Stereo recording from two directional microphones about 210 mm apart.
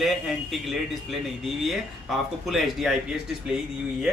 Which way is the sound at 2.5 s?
Centre (ahead or behind).